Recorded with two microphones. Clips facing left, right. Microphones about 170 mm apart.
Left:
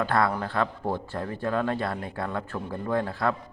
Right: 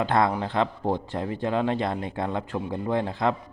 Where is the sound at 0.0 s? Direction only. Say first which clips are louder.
Right 2 dB; 20° right (ahead or behind).